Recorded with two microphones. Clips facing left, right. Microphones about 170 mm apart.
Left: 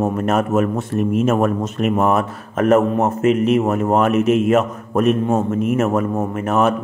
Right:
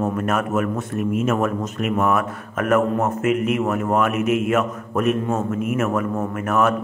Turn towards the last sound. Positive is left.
turn(degrees=20)  # may be behind; listen again after turning